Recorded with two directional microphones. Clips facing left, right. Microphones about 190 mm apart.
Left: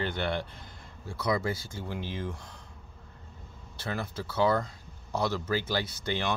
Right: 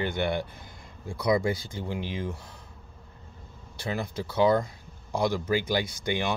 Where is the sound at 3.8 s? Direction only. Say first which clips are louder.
Right 3 dB; 15° right (ahead or behind).